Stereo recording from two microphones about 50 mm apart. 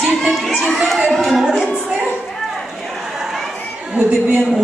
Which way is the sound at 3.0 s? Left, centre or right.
Centre.